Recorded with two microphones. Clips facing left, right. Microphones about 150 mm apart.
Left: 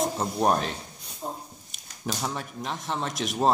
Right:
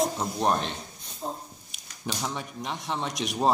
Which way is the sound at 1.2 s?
15° right (ahead or behind).